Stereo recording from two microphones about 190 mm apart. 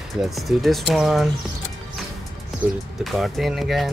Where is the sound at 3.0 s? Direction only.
Centre (ahead or behind).